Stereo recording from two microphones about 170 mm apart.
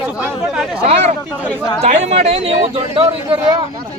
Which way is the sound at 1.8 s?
40° right (ahead or behind).